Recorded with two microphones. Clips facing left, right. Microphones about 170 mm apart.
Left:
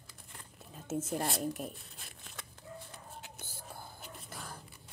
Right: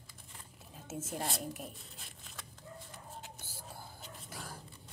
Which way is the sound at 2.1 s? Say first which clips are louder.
Left 2 dB; centre (ahead or behind).